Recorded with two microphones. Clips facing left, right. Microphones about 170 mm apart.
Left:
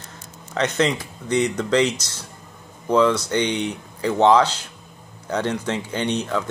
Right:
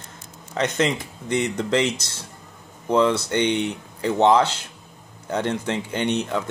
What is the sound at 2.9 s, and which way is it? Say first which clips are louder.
A man's voice: left 1 dB; 25° right (ahead or behind).